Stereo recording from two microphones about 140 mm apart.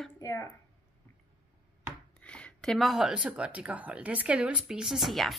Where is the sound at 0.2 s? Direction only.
20° left (ahead or behind).